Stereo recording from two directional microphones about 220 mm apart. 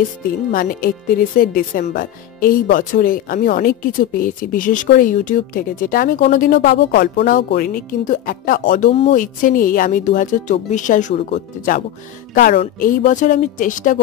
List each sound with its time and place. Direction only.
0.5 s speech: 40° left (ahead or behind)